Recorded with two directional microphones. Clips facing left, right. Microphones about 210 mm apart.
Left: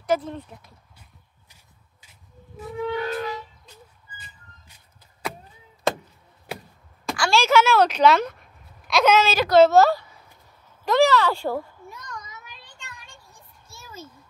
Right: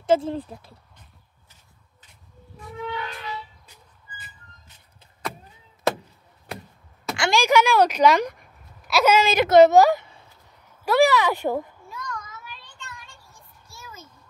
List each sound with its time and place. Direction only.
0.0 s speech: 30° right (ahead or behind)
2.9 s music: 45° left (ahead or behind)
3.6 s music: 10° right (ahead or behind)
7.2 s speech: 15° right (ahead or behind)
9.3 s a woman's voice: 20° right (ahead or behind)
11.9 s child singing: 20° left (ahead or behind)
13.7 s a sound: 25° left (ahead or behind)